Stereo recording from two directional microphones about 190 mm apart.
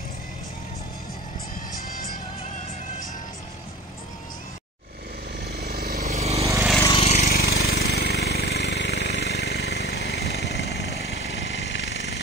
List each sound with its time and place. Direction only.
5.4 s vehicle: 55° right (ahead or behind)
6.0 s vehicle: 35° right (ahead or behind)
6.3 s vehicle: 15° right (ahead or behind)
7.0 s a sound: 35° left (ahead or behind)
7.2 s jackhammer: 55° left (ahead or behind)